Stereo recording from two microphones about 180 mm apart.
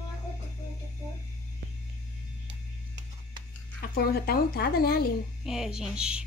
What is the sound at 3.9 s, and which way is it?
Speech, 60° left (ahead or behind).